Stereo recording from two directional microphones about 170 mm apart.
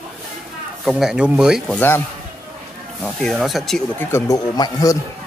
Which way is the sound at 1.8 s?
10° left (ahead or behind).